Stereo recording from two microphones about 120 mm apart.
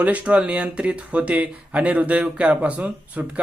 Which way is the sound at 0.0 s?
10° right (ahead or behind).